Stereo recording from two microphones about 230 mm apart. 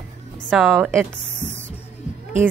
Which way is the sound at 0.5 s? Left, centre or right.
Centre.